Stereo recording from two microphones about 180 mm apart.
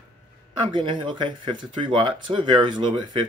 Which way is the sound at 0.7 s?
25° right (ahead or behind).